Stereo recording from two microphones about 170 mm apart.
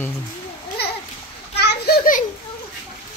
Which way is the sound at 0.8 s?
70° left (ahead or behind).